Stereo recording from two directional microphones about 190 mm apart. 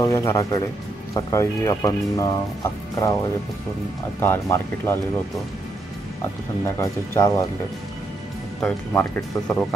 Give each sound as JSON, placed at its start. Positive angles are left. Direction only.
{"t": 0.0, "sound": "speech", "side_deg": 15}
{"t": 4.2, "sound": "speech", "side_deg": 10}
{"t": 6.6, "sound": "speech", "side_deg": 15}
{"t": 8.5, "sound": "speech", "side_deg": 10}